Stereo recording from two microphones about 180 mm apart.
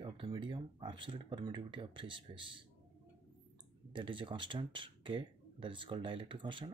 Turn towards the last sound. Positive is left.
turn(degrees=-25)  # may be behind; listen again after turning